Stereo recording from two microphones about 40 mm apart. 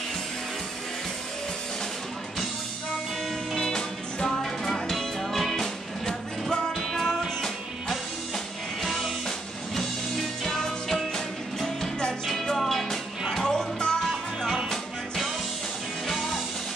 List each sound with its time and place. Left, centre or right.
3.5 s music: centre
4.9 s music: centre
10.4 s music: centre